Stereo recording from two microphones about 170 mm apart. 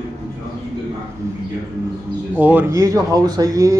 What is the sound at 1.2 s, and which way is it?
A man's voice, 15° right (ahead or behind).